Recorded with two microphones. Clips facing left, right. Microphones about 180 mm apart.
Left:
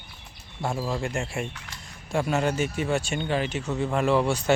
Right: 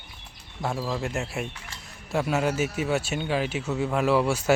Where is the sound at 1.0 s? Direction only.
5° right (ahead or behind).